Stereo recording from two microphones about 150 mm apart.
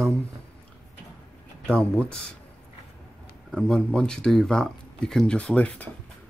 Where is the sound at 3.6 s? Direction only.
5° left (ahead or behind).